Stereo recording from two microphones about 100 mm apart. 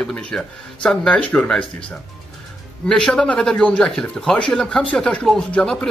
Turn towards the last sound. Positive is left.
turn(degrees=5)  # may be behind; listen again after turning